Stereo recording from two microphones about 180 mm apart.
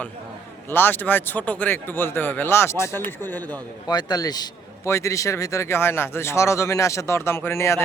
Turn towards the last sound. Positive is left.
turn(degrees=15)  # may be behind; listen again after turning